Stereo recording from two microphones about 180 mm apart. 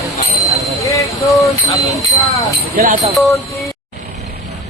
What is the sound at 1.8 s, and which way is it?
Speech, 20° left (ahead or behind).